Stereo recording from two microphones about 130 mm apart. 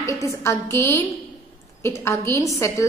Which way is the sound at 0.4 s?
20° left (ahead or behind).